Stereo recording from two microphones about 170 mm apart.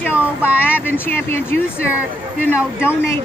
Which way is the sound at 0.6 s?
10° left (ahead or behind).